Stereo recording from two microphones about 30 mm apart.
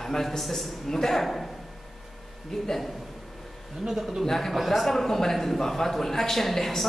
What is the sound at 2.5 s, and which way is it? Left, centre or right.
Speech, centre.